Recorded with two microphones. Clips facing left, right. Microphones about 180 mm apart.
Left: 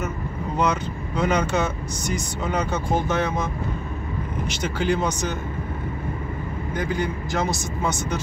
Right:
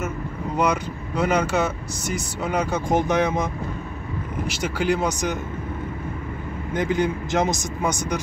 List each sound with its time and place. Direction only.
0.6 s speech: 10° right (ahead or behind)
4.5 s speech: 10° right (ahead or behind)
6.7 s speech: 20° right (ahead or behind)